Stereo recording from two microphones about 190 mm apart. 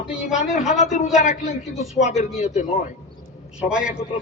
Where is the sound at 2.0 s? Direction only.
40° left (ahead or behind).